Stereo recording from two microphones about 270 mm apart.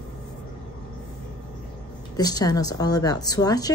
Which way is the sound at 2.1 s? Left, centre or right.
Centre.